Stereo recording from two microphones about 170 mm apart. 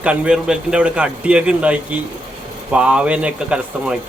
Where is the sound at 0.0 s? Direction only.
5° right (ahead or behind).